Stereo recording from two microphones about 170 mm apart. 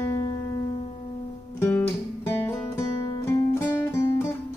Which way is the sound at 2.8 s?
15° left (ahead or behind).